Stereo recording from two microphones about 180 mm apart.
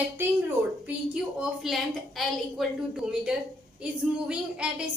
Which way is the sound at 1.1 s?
5° right (ahead or behind).